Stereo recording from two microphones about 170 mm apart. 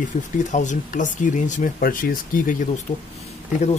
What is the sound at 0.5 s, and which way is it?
Speech, 45° left (ahead or behind).